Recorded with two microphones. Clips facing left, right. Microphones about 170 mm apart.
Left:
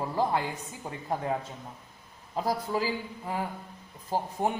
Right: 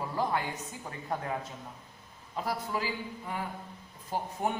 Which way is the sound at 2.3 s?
35° left (ahead or behind).